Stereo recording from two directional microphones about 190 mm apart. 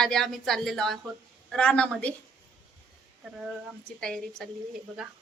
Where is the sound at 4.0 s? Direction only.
5° left (ahead or behind).